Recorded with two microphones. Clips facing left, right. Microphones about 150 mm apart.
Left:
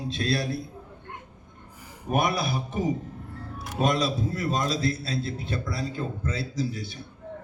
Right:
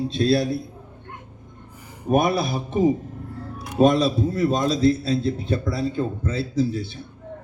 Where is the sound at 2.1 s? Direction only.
35° right (ahead or behind).